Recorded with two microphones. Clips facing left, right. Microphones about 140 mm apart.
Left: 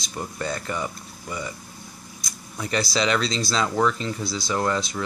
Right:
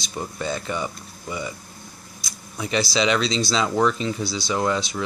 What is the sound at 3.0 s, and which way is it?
Speech, 20° right (ahead or behind).